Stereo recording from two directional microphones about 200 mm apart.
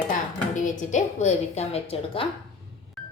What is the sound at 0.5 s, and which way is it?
A woman's voice, 40° left (ahead or behind).